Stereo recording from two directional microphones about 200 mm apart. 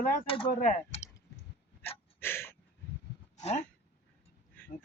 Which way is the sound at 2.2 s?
10° left (ahead or behind).